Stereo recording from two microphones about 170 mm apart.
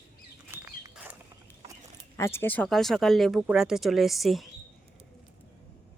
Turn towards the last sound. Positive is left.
turn(degrees=0)  # may be behind; listen again after turning